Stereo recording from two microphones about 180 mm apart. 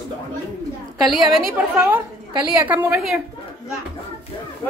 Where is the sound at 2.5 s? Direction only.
10° right (ahead or behind).